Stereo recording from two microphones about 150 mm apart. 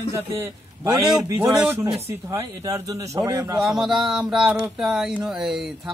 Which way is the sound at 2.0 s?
20° right (ahead or behind).